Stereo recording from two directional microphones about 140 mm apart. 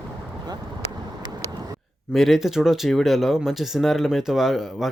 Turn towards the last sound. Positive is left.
turn(degrees=-5)  # may be behind; listen again after turning